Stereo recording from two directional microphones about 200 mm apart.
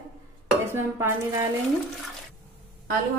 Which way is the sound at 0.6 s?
10° right (ahead or behind).